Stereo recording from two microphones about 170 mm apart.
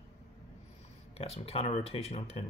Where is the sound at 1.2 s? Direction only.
35° left (ahead or behind).